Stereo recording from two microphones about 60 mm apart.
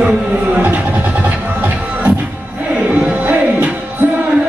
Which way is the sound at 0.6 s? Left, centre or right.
Right.